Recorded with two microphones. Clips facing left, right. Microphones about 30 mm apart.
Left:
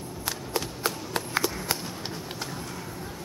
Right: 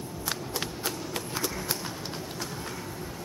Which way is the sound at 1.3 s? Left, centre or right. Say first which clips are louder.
Left 5 dB; left.